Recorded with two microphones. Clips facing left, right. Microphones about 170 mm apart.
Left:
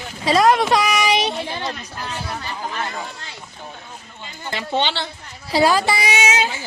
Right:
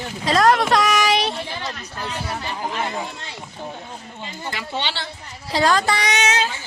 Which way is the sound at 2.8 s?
20° right (ahead or behind).